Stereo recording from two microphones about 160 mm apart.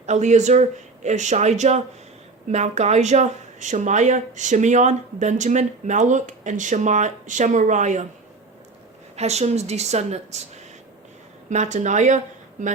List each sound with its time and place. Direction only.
0.0 s speech: 45° right (ahead or behind)
9.1 s speech: 45° right (ahead or behind)
11.4 s a woman's voice: 50° right (ahead or behind)